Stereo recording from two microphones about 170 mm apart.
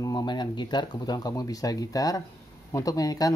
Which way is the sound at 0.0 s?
25° left (ahead or behind).